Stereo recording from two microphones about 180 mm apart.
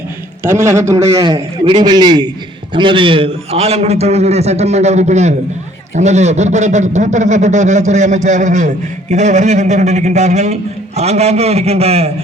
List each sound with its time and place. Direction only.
0.4 s a man's voice: 15° right (ahead or behind); by 12.1 s 35° right (ahead or behind)